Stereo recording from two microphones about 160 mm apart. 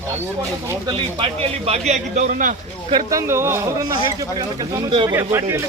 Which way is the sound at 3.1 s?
20° right (ahead or behind).